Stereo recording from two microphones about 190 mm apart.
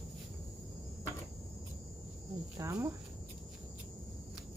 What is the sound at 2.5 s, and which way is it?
Speech, 15° right (ahead or behind).